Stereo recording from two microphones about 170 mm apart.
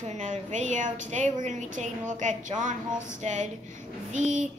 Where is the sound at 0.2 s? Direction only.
45° right (ahead or behind).